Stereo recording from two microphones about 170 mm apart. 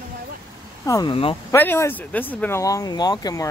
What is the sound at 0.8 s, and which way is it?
Speech, 20° left (ahead or behind).